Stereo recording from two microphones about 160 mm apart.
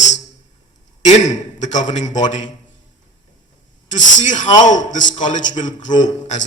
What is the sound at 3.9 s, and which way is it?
A man's voice, 50° left (ahead or behind).